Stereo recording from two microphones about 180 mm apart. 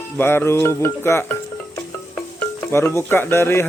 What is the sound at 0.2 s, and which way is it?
A man's voice, 10° left (ahead or behind).